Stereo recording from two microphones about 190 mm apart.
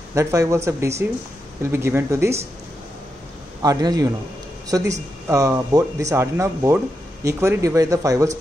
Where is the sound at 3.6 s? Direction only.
20° right (ahead or behind).